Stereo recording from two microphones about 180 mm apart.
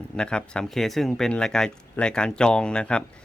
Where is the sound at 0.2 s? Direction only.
5° left (ahead or behind).